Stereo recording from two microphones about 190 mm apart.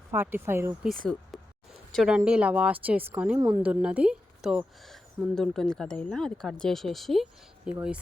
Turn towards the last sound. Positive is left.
turn(degrees=-5)  # may be behind; listen again after turning